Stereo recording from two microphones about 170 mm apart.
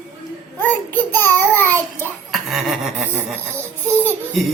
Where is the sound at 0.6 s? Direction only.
10° left (ahead or behind).